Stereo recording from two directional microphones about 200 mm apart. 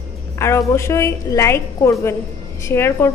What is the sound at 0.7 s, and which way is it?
A woman's voice, 15° left (ahead or behind).